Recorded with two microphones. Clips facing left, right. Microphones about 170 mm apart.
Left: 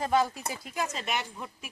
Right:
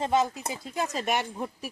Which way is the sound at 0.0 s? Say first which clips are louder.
Right 1 dB; 20° right (ahead or behind).